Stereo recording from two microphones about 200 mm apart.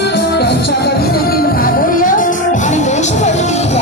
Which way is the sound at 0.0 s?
55° left (ahead or behind).